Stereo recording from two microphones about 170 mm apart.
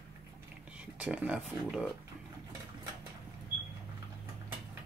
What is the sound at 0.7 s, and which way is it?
Speech, 10° right (ahead or behind).